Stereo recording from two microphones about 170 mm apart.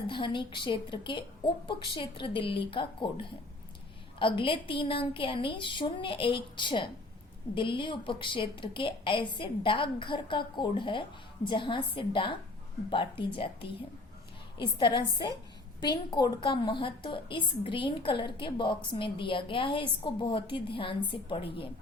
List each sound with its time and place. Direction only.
0.1 s a woman's voice: 30° left (ahead or behind)